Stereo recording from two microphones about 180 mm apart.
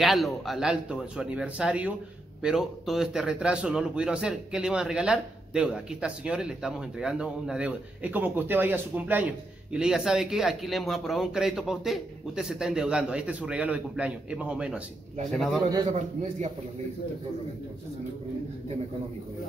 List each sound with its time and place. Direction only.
0.0 s a man's voice: centre (ahead or behind)
15.9 s a man's voice: 40° right (ahead or behind)